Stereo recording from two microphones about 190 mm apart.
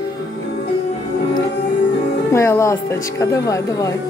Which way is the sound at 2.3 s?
15° left (ahead or behind).